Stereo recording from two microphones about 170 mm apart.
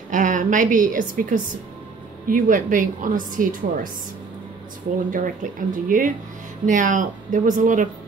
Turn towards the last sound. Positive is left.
turn(degrees=-50)  # may be behind; listen again after turning